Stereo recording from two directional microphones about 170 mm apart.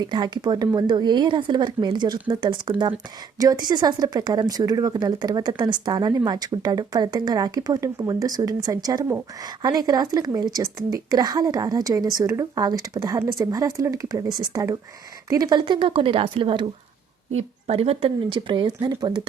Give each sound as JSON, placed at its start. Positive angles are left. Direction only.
{"t": 0.0, "sound": "speech", "side_deg": -25}